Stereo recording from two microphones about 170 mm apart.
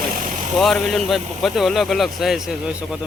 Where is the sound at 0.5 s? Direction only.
Centre (ahead or behind).